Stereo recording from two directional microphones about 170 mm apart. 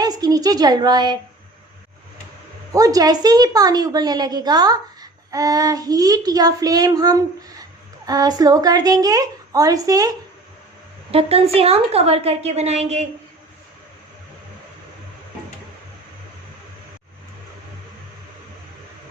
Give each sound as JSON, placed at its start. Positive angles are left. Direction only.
{"t": 0.0, "sound": "a woman's voice", "side_deg": -25}
{"t": 2.7, "sound": "speech", "side_deg": -20}
{"t": 11.1, "sound": "a woman's voice", "side_deg": -35}